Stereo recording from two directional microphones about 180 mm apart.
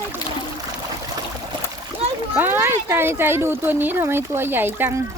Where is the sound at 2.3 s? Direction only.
10° right (ahead or behind).